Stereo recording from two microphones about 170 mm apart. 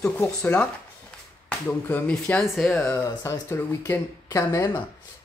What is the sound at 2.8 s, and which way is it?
Speech, 15° left (ahead or behind).